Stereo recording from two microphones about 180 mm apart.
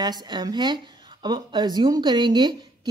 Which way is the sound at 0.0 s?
20° right (ahead or behind).